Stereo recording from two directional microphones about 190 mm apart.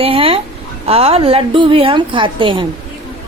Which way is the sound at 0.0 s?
30° right (ahead or behind).